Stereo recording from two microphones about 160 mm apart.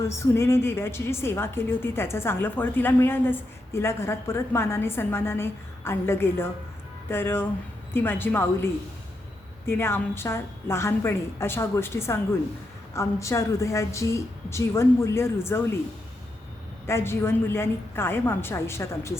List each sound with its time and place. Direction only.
0.0 s a woman's voice: 15° left (ahead or behind)
16.8 s a woman's voice: 15° left (ahead or behind)